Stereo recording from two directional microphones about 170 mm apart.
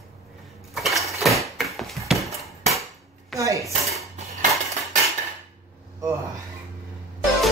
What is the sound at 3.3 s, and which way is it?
Speech, 20° right (ahead or behind).